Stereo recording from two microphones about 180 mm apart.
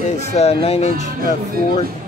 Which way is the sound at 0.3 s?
35° left (ahead or behind).